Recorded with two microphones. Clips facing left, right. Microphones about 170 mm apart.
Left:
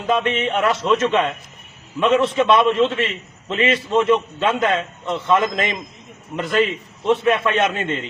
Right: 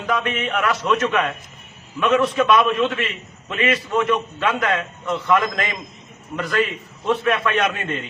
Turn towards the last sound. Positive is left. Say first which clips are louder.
# left 2 dB
turn(degrees=25)  # may be behind; listen again after turning